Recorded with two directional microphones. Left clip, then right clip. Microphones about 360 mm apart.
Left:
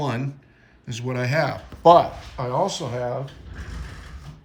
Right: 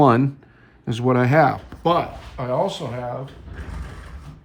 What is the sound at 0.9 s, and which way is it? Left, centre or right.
Speech, centre.